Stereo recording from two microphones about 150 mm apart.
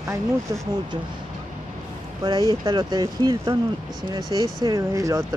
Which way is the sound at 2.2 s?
25° right (ahead or behind).